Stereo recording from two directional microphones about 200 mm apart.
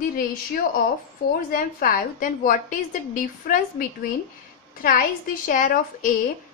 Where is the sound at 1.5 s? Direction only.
45° left (ahead or behind).